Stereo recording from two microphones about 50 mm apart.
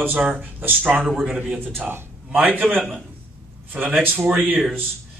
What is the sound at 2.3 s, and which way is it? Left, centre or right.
Speech, right.